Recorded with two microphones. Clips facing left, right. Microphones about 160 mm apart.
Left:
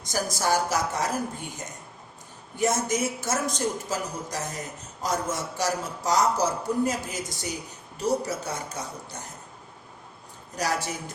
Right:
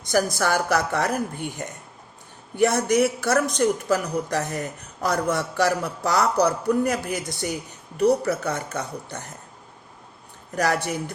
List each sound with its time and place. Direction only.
0.0 s a man's voice: 65° right (ahead or behind)
10.6 s a man's voice: 65° right (ahead or behind)